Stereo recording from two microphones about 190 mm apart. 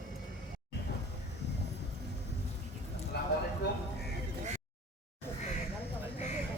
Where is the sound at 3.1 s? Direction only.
60° left (ahead or behind).